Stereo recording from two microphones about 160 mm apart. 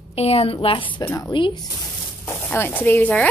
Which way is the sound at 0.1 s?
40° left (ahead or behind).